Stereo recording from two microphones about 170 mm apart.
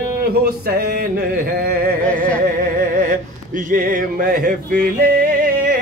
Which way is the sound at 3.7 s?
50° right (ahead or behind).